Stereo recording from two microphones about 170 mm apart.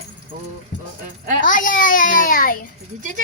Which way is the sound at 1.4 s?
50° left (ahead or behind).